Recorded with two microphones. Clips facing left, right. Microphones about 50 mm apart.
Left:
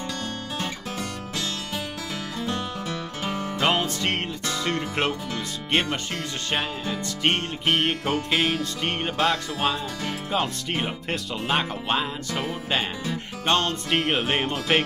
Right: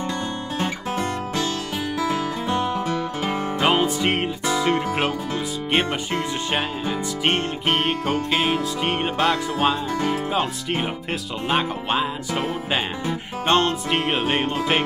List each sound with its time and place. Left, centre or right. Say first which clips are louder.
0.6 s music: right 8 dB; right
3.6 s music: right 4 dB; centre
5.7 s speech: right 2 dB; centre
7.6 s speech: even; centre
13.0 s music: right 3 dB; right
13.8 s speech: right 2 dB; centre